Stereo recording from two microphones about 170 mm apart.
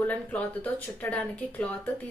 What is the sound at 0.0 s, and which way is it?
A woman's voice, 10° left (ahead or behind).